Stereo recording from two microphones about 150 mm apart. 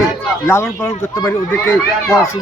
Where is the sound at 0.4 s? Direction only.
15° left (ahead or behind).